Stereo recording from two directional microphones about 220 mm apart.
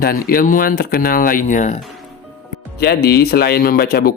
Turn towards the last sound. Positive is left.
turn(degrees=45)  # may be behind; listen again after turning